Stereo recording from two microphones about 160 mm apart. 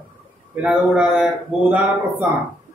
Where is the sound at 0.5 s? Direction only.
5° right (ahead or behind).